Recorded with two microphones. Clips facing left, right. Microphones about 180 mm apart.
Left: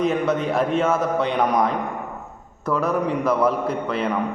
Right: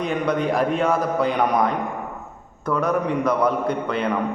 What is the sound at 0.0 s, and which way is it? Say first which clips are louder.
A man's voice: left 1 dB; 5° left (ahead or behind).